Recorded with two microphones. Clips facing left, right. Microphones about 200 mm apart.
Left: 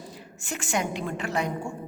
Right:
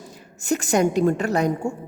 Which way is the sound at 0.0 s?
45° right (ahead or behind).